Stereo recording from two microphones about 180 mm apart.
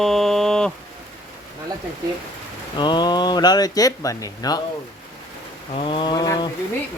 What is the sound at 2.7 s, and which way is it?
Speech, 25° left (ahead or behind).